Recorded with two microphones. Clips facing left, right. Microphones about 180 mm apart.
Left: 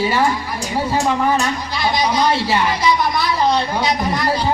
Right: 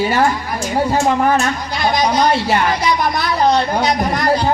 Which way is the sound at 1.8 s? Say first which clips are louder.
Right 2 dB; 50° right (ahead or behind).